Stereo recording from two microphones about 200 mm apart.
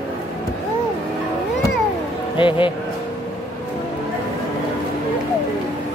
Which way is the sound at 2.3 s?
25° left (ahead or behind).